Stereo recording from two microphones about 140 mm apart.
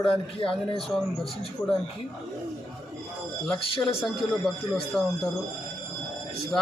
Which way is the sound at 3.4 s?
5° left (ahead or behind).